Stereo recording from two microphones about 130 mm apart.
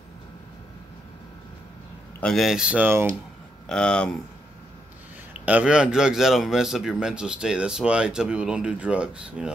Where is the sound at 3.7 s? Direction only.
5° left (ahead or behind).